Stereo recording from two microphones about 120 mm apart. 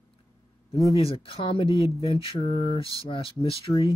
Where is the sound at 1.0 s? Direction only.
50° left (ahead or behind).